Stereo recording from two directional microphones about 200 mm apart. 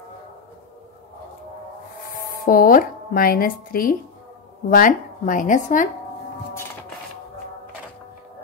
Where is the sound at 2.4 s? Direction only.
45° left (ahead or behind).